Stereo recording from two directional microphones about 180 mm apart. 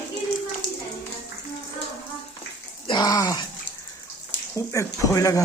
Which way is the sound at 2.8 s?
25° left (ahead or behind).